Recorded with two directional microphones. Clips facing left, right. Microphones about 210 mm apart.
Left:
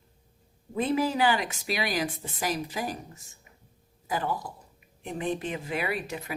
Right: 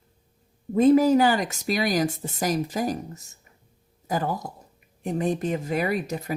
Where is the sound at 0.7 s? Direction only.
45° right (ahead or behind).